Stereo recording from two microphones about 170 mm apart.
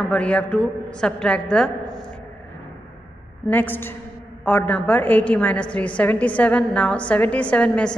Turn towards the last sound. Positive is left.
turn(degrees=5)  # may be behind; listen again after turning